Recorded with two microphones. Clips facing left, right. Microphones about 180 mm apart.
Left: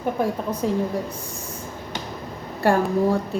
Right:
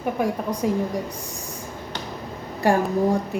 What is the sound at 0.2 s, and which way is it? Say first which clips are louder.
Speech: even; 15° right (ahead or behind).